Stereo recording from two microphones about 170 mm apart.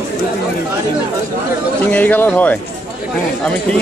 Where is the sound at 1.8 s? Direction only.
10° left (ahead or behind).